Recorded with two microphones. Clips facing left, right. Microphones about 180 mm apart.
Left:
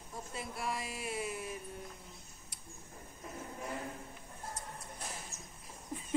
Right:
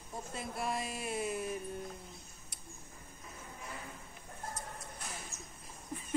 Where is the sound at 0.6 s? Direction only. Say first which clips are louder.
Right 3 dB; 50° right (ahead or behind).